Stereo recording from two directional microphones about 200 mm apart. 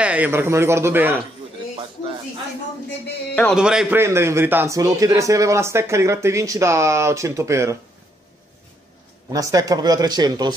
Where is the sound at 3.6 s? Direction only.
5° right (ahead or behind).